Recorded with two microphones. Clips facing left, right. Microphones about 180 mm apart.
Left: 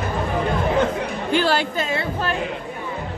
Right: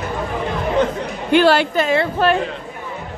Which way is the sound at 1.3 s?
75° right (ahead or behind).